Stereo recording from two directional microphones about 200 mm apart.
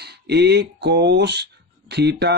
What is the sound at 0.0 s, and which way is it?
Speech, 55° right (ahead or behind).